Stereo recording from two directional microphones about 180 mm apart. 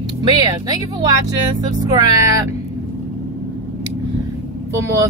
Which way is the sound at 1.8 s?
20° right (ahead or behind).